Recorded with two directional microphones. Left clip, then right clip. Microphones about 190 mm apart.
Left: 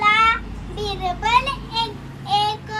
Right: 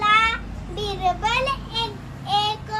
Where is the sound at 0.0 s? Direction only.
15° right (ahead or behind).